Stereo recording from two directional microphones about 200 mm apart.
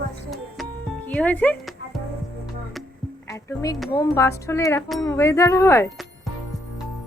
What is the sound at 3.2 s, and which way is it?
A woman's voice, 15° left (ahead or behind).